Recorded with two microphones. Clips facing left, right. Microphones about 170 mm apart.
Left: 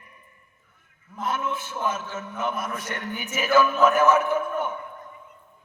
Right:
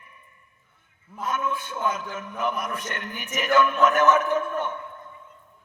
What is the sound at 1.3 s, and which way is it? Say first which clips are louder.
Speech: right 1 dB; 30° left (ahead or behind).